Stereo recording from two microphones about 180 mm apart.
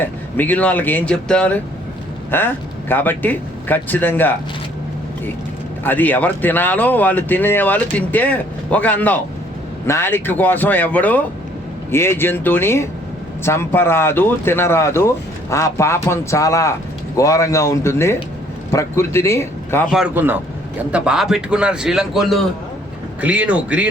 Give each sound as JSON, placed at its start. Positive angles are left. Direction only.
{"t": 0.0, "sound": "speech", "side_deg": 10}
{"t": 5.8, "sound": "speech", "side_deg": 10}
{"t": 19.9, "sound": "a man's voice", "side_deg": -5}